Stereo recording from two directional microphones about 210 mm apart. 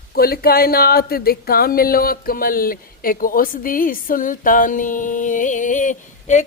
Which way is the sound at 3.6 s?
40° left (ahead or behind).